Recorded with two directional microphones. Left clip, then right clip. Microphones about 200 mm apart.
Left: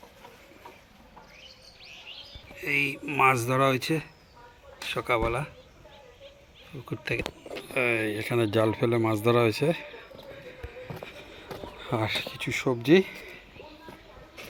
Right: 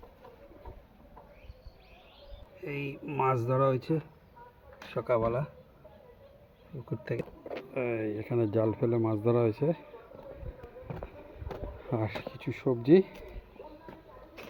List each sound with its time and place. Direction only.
2.6 s speech: centre (ahead or behind)
7.0 s speech: centre (ahead or behind)
10.8 s a sound: 10° left (ahead or behind)
11.8 s speech: 5° left (ahead or behind)